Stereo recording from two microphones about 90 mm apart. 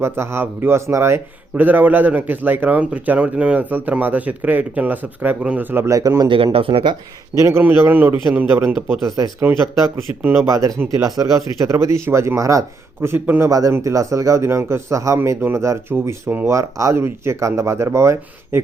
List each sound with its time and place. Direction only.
0.0 s speech: 30° right (ahead or behind)
1.5 s speech: 20° right (ahead or behind)
5.9 s speech: 40° right (ahead or behind)
6.2 s speech: 80° right
7.3 s speech: 35° right (ahead or behind)
7.6 s speech: 20° right (ahead or behind)
9.0 s speech: 40° right (ahead or behind); by 13.4 s 20° right (ahead or behind)
13.4 s speech: 35° right (ahead or behind)